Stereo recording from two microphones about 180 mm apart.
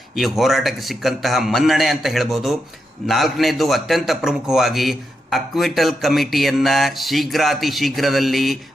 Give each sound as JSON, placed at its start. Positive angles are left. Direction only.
{"t": 0.2, "sound": "a man's voice", "side_deg": 0}